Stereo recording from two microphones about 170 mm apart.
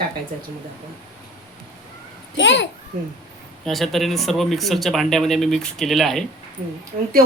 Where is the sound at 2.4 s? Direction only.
90° left.